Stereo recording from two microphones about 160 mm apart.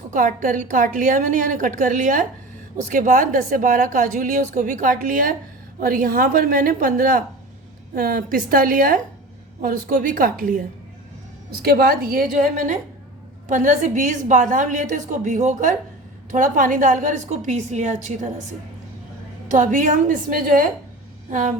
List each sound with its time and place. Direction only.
0.1 s a woman's voice: 55° right (ahead or behind)
11.6 s a woman's voice: 70° right (ahead or behind); by 18.4 s 50° right (ahead or behind)
19.5 s a woman's voice: 55° right (ahead or behind)